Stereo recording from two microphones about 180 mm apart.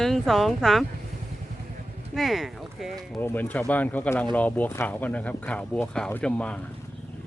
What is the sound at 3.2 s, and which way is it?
Speech, 10° left (ahead or behind).